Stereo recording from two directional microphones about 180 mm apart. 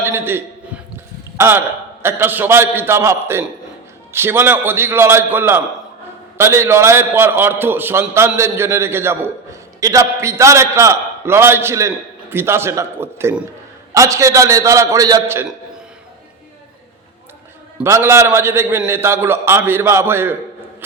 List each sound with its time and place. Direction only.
0.0 s a sound: 15° right (ahead or behind)
1.4 s a man's voice: 15° right (ahead or behind)
17.8 s a man's voice: 15° right (ahead or behind)